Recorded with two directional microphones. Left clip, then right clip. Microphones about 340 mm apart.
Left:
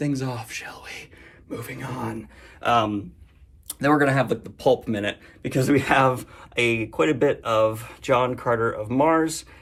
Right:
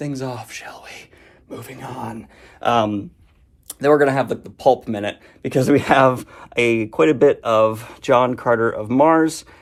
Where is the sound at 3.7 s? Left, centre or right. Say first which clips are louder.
Right 5 dB; centre.